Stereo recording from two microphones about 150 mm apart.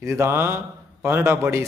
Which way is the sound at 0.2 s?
15° right (ahead or behind).